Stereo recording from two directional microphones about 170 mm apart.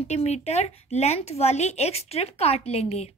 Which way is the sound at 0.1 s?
40° left (ahead or behind).